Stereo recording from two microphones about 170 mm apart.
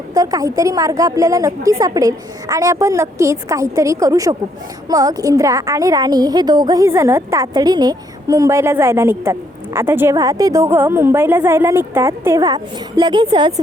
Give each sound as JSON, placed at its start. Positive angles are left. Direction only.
{"t": 0.1, "sound": "a woman's voice", "side_deg": -20}